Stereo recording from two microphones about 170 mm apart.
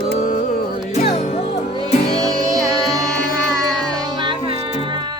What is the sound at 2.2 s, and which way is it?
Music, 20° right (ahead or behind).